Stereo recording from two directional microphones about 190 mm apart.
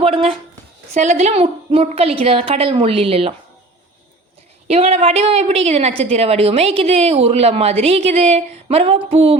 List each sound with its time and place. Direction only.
0.0 s a woman's voice: 30° right (ahead or behind)
4.7 s a woman's voice: 30° right (ahead or behind)